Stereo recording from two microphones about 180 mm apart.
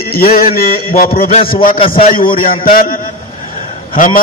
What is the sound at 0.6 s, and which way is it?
A man's voice, 55° left (ahead or behind).